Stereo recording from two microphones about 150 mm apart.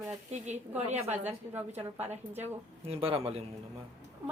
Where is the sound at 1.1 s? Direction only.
15° right (ahead or behind).